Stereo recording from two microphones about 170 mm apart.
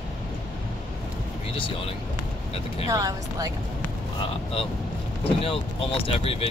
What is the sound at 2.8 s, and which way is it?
Speech, 20° right (ahead or behind).